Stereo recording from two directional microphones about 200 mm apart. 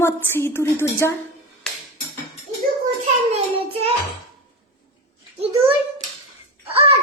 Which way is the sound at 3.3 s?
30° right (ahead or behind).